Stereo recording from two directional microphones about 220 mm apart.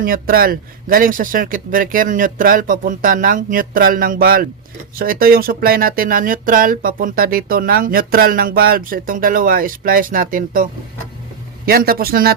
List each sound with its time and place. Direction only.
0.0 s speech: 40° right (ahead or behind)